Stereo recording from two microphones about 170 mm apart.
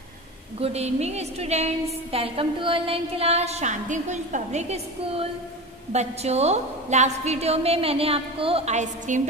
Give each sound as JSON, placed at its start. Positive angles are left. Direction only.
{"t": 0.6, "sound": "a woman's voice", "side_deg": -40}